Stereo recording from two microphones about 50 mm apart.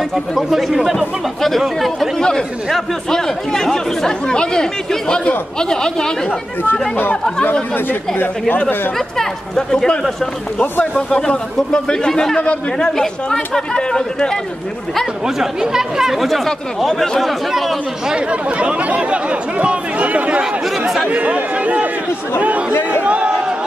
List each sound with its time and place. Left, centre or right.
0.1 s speech: centre
2.1 s speech: centre
8.5 s speech: left
8.9 s speech: centre
11.0 s speech: centre
15.2 s speech: centre
18.1 s speech: right
23.0 s a sound: right